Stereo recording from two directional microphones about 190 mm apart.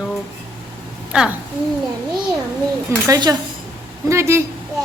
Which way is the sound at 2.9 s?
20° right (ahead or behind).